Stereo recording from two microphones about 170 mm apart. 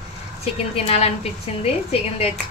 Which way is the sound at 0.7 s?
35° left (ahead or behind).